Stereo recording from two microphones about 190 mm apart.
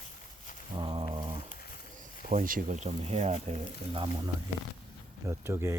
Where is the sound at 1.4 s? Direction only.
50° left (ahead or behind).